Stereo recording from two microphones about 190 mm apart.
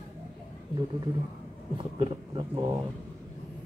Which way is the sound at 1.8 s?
25° right (ahead or behind).